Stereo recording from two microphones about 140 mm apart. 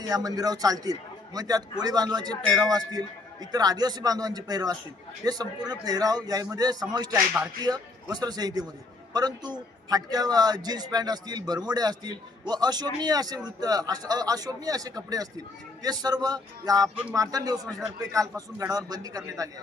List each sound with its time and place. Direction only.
0.0 s speech: 25° right (ahead or behind)